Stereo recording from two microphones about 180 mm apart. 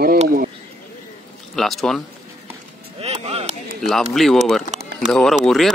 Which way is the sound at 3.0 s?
35° right (ahead or behind).